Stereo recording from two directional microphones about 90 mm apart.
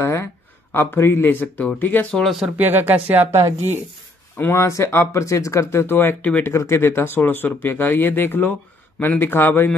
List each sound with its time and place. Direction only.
0.0 s a sound: 30° left (ahead or behind)
0.7 s speech: 25° left (ahead or behind)
2.5 s speech: 20° right (ahead or behind)
4.4 s speech: 30° left (ahead or behind)